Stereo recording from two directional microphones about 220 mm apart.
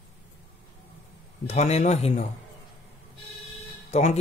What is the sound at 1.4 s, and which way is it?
Speech, 30° left (ahead or behind).